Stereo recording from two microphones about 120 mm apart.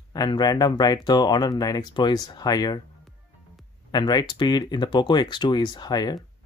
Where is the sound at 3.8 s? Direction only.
35° left (ahead or behind).